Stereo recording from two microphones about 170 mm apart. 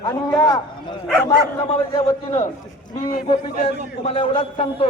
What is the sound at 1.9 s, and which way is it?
A man's voice, 35° left (ahead or behind).